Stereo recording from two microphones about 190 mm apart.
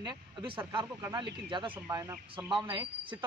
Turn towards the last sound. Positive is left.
turn(degrees=-25)  # may be behind; listen again after turning